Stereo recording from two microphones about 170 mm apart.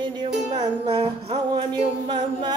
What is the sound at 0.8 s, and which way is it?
Music, 35° right (ahead or behind).